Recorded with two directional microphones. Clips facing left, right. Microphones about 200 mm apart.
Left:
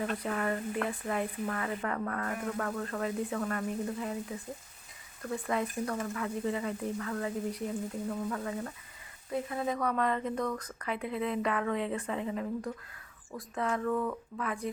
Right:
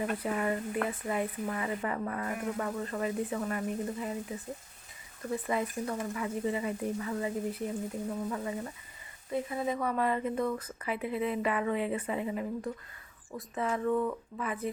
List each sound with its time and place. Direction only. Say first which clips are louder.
0.0 s speech: right 1 dB; 10° right (ahead or behind)
5.2 s speech: right 1 dB; 5° right (ahead or behind)